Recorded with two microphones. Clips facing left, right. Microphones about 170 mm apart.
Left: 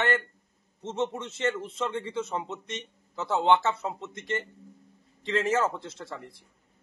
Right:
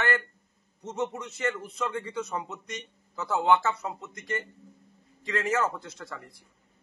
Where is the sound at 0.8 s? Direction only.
25° left (ahead or behind).